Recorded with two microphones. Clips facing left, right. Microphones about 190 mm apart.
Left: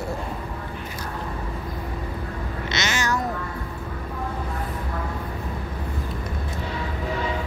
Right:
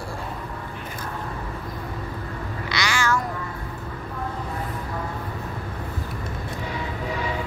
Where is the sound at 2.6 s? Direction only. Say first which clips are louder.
Right 1 dB; 20° left (ahead or behind).